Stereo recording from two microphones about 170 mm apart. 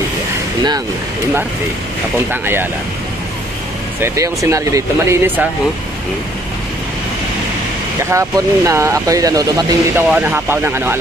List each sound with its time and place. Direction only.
4.0 s speech: 20° right (ahead or behind)
8.0 s speech: 15° right (ahead or behind)